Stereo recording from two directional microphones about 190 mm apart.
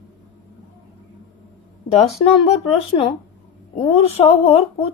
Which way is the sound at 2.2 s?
30° left (ahead or behind).